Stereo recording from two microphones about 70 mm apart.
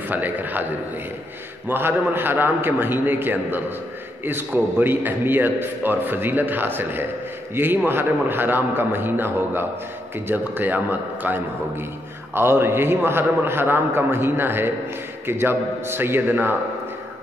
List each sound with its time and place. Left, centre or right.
0.1 s a man's voice: right
1.7 s a man's voice: right